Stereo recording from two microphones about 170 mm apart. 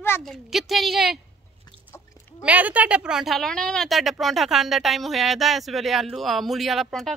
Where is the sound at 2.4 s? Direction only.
10° right (ahead or behind).